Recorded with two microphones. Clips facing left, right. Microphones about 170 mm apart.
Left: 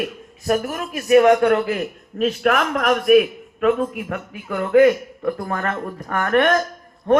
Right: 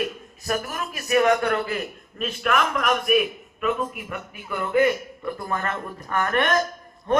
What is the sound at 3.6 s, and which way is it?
A man's voice, 80° left.